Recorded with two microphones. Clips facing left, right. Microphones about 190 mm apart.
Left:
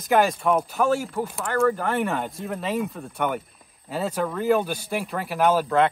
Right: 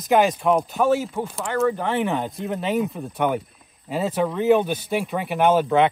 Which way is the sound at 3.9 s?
Centre (ahead or behind).